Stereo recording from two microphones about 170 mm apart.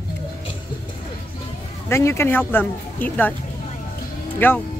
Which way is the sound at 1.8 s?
15° left (ahead or behind).